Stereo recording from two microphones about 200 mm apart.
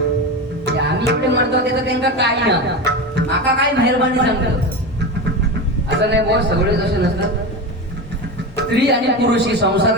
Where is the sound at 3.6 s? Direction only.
55° right (ahead or behind).